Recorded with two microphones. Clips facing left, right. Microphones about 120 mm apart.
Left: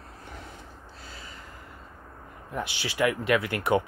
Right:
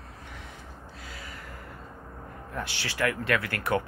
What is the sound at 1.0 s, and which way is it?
Gasp, 30° left (ahead or behind).